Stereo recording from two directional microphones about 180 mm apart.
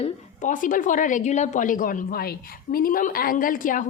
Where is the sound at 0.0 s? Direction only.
45° left (ahead or behind).